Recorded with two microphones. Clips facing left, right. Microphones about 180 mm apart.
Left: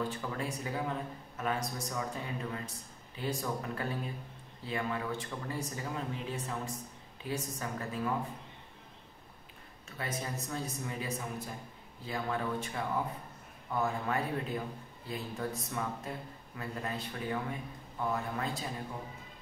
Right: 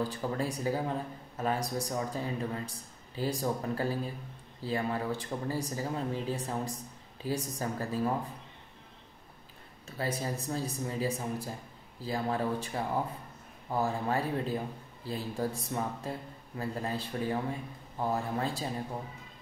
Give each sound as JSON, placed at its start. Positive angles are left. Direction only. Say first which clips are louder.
{"t": 0.1, "sound": "speech", "louder": "right 4 dB", "side_deg": -35}
{"t": 9.8, "sound": "speech", "louder": "right 5 dB", "side_deg": -30}